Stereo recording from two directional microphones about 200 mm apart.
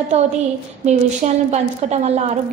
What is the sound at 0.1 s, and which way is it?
A woman's voice, 30° right (ahead or behind).